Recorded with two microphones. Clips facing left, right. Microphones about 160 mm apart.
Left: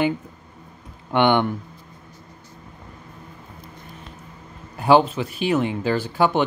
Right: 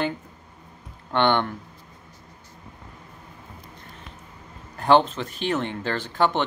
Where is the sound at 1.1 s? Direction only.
15° left (ahead or behind).